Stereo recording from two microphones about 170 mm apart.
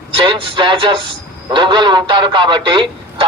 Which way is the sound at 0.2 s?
30° right (ahead or behind).